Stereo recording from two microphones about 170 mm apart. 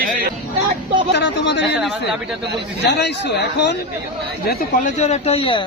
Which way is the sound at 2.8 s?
85° left.